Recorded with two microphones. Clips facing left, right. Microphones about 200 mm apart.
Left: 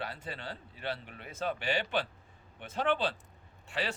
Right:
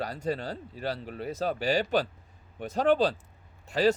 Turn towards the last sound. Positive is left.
turn(degrees=-40)  # may be behind; listen again after turning